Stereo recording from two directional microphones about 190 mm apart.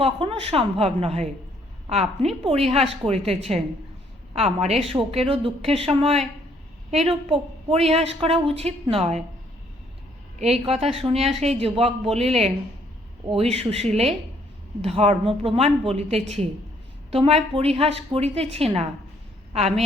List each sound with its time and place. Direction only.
0.0 s a woman's voice: 30° right (ahead or behind)
10.7 s a woman's voice: 35° right (ahead or behind)